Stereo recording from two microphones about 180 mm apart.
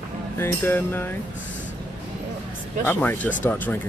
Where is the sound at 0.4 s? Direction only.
15° left (ahead or behind).